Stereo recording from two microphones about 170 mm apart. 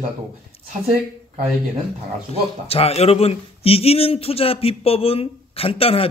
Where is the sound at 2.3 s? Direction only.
35° left (ahead or behind).